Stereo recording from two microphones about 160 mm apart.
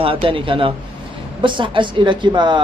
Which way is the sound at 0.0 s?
35° right (ahead or behind).